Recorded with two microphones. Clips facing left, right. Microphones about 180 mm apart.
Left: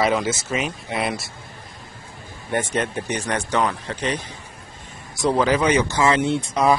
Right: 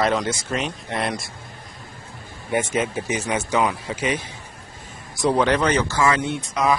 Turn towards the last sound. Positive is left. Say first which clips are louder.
# left 3 dB
turn(degrees=30)  # may be behind; listen again after turning